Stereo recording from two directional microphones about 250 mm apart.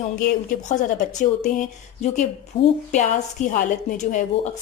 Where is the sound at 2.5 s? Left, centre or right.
Left.